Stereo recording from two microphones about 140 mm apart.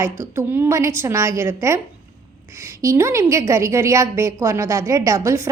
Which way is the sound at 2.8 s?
20° right (ahead or behind).